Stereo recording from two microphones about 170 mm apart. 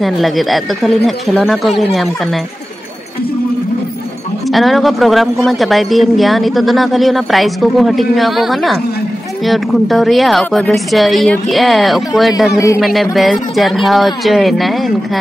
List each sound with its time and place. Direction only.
0.0 s speech: centre (ahead or behind)
4.5 s speech: centre (ahead or behind)
12.5 s music: 20° left (ahead or behind)
12.8 s speech: centre (ahead or behind)